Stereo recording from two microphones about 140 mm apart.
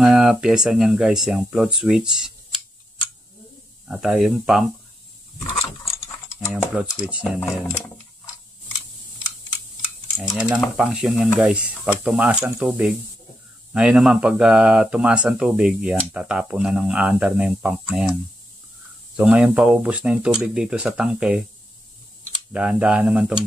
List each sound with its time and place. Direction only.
0.0 s speech: centre (ahead or behind)
3.8 s speech: 5° right (ahead or behind)
5.9 s ratchet: 20° left (ahead or behind)
7.0 s speech: 5° right (ahead or behind)
10.3 s speech: 10° right (ahead or behind)
22.5 s speech: 10° right (ahead or behind)